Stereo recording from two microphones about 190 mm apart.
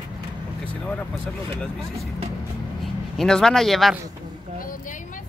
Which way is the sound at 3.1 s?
5° left (ahead or behind).